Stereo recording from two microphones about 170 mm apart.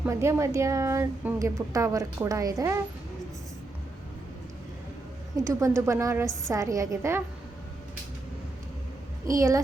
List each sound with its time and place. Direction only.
0.0 s a woman's voice: 15° right (ahead or behind)
5.4 s a woman's voice: 15° right (ahead or behind)
9.2 s a woman's voice: 20° right (ahead or behind)